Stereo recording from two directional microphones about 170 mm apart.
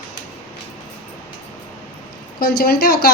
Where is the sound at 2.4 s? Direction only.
65° left (ahead or behind).